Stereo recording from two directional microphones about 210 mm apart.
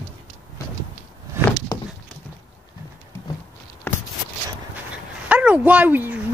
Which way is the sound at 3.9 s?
10° left (ahead or behind).